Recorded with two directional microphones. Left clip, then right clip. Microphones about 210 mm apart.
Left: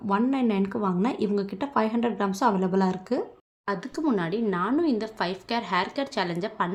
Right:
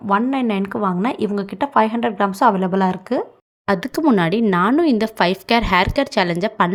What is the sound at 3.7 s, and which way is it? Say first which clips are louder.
Speech: right 10 dB; 40° right (ahead or behind).